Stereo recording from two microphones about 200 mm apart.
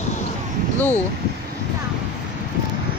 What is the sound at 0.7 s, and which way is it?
Speech, 10° left (ahead or behind).